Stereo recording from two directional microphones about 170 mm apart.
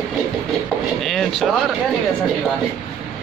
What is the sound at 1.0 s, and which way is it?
Speech, centre (ahead or behind).